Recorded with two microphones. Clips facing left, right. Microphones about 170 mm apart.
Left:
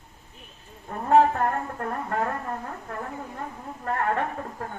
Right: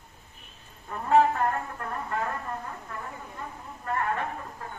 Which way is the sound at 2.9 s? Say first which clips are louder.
Left 5 dB; 50° left (ahead or behind).